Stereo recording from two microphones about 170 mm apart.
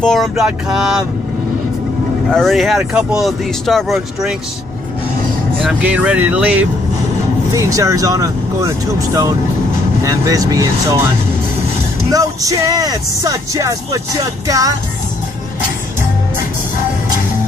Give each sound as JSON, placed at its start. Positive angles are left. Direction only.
{"t": 0.0, "sound": "speech", "side_deg": 0}
{"t": 2.3, "sound": "speech", "side_deg": 0}
{"t": 5.6, "sound": "speech", "side_deg": -5}
{"t": 7.5, "sound": "speech", "side_deg": -20}
{"t": 12.1, "sound": "speech", "side_deg": -20}